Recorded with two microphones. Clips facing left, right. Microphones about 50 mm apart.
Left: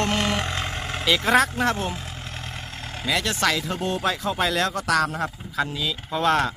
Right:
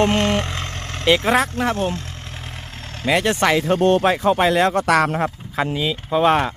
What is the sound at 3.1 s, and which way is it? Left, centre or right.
Speech, right.